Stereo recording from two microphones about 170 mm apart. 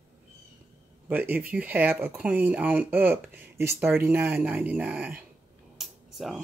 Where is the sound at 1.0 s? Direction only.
10° right (ahead or behind).